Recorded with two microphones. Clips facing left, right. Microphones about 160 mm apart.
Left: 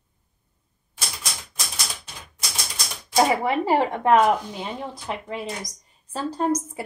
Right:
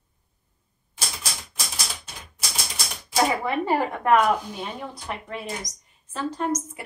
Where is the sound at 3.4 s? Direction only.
25° left (ahead or behind).